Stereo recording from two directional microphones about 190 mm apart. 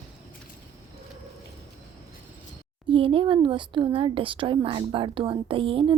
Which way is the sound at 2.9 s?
25° right (ahead or behind).